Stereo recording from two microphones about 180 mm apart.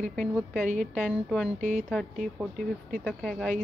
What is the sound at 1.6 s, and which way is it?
Speech, 40° right (ahead or behind).